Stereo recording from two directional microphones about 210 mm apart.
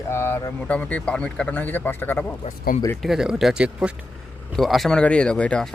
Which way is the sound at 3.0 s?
Centre (ahead or behind).